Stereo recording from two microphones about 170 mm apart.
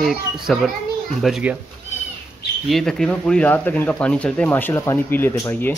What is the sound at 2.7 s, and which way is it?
Speech, centre (ahead or behind).